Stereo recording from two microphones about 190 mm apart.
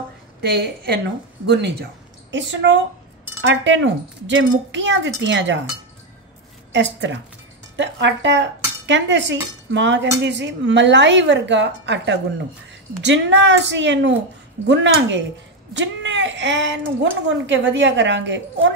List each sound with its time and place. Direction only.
0.4 s a woman's voice: 60° right (ahead or behind)
6.7 s a woman's voice: 70° right (ahead or behind)